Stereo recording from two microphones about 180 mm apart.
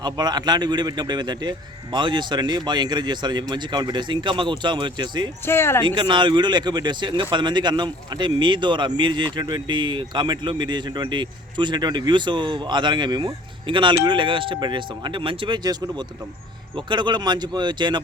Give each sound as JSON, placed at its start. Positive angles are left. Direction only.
{"t": 0.0, "sound": "speech", "side_deg": -25}
{"t": 5.5, "sound": "speech", "side_deg": 15}
{"t": 5.8, "sound": "speech", "side_deg": -25}